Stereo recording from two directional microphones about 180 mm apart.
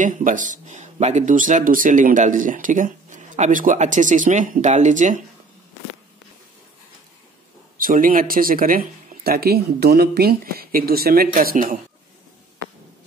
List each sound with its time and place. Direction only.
0.0 s speech: 45° right (ahead or behind)
7.8 s speech: 50° right (ahead or behind)